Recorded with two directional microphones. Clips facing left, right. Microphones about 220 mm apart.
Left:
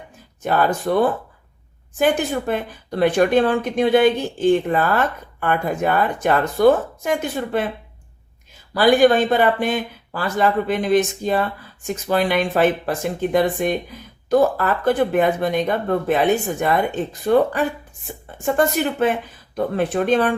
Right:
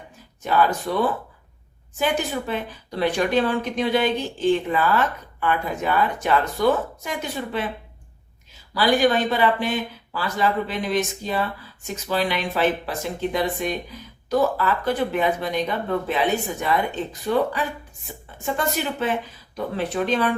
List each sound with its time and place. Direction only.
0.4 s speech: 50° left (ahead or behind)
8.7 s a woman's voice: 50° left (ahead or behind)